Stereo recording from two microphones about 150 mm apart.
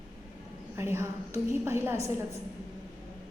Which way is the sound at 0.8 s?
15° right (ahead or behind).